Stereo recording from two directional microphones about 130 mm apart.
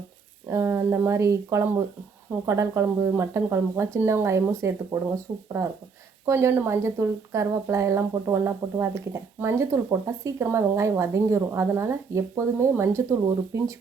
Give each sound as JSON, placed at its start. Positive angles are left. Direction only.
{"t": 0.4, "sound": "speech", "side_deg": -20}
{"t": 5.3, "sound": "speech", "side_deg": -35}
{"t": 6.2, "sound": "speech", "side_deg": -20}